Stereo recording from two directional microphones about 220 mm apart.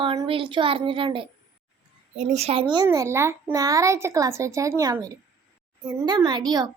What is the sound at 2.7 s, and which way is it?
A child's voice, 15° right (ahead or behind).